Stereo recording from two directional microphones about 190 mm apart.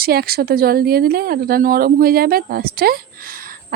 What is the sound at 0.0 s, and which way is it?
Speech, 55° right (ahead or behind).